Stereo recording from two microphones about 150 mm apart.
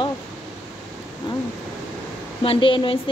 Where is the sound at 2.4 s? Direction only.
35° left (ahead or behind).